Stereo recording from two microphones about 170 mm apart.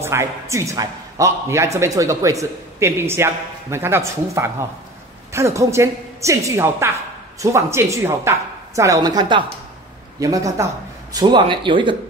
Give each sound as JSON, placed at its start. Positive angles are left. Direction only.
{"t": 0.0, "sound": "a man's voice", "side_deg": -15}